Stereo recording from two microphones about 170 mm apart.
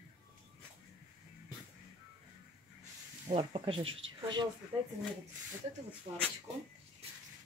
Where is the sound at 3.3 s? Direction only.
30° right (ahead or behind).